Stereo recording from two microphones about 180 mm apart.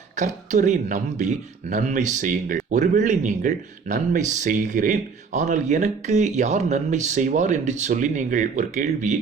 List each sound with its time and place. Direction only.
0.2 s speech: 40° right (ahead or behind)